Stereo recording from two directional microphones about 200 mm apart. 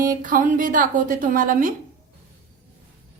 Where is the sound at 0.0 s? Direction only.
45° right (ahead or behind).